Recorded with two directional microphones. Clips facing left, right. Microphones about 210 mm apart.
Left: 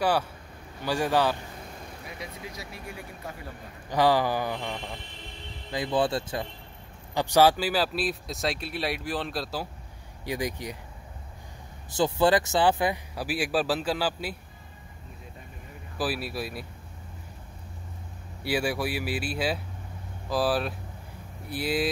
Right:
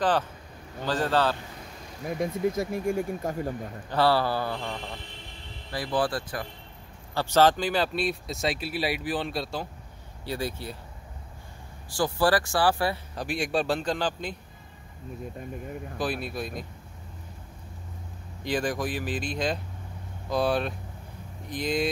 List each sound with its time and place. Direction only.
0.0 s speech: 10° left (ahead or behind)
2.0 s speech: 50° right (ahead or behind)
3.9 s speech: 15° left (ahead or behind)
7.2 s speech: 15° left (ahead or behind)
10.2 s speech: 15° left (ahead or behind)
11.9 s speech: 20° left (ahead or behind)
16.0 s speech: 5° left (ahead or behind)
18.4 s speech: 10° left (ahead or behind)